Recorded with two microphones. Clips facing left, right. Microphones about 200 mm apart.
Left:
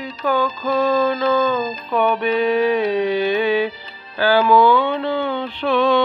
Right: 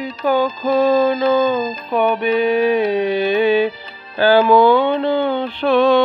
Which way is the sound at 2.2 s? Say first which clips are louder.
Right 2 dB; 55° right (ahead or behind).